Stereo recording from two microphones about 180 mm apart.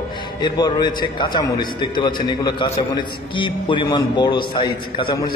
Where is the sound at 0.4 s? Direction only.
20° left (ahead or behind).